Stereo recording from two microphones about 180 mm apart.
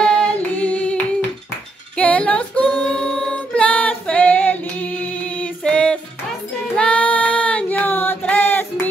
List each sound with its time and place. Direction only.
0.0 s singing: 5° left (ahead or behind)
2.0 s music: 5° left (ahead or behind)
6.8 s female singing: 5° left (ahead or behind)